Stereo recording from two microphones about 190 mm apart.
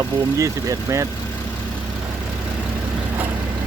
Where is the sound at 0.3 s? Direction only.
15° right (ahead or behind).